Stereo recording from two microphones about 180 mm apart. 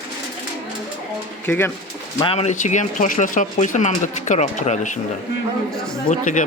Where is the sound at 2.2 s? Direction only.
35° left (ahead or behind).